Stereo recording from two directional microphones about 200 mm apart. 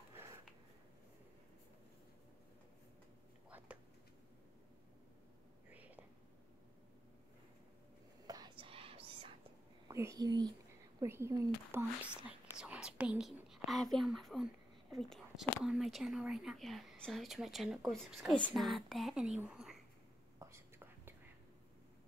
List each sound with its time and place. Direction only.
0.1 s a sound: 15° right (ahead or behind)
3.4 s a sound: 5° right (ahead or behind)
5.7 s whispering: 10° right (ahead or behind)
8.3 s whispering: 20° right (ahead or behind)
9.8 s speech: 15° right (ahead or behind)
20.3 s whispering: 15° right (ahead or behind)